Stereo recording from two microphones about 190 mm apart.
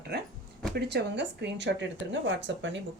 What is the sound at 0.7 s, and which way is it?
Speech, 60° right (ahead or behind).